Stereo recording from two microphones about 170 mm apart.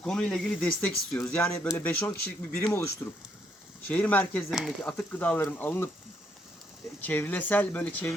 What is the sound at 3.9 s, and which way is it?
Speech, 10° left (ahead or behind).